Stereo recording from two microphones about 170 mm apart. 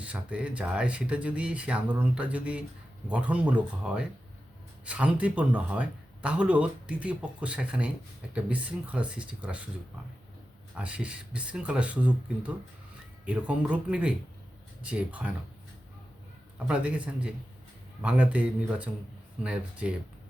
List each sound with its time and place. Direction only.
0.0 s speech: 5° right (ahead or behind)
10.8 s speech: 5° right (ahead or behind)
16.6 s speech: 5° right (ahead or behind)